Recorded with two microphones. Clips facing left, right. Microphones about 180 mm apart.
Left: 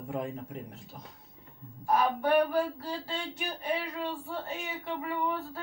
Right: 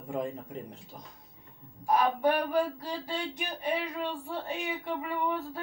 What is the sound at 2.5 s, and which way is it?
Speech, 15° right (ahead or behind).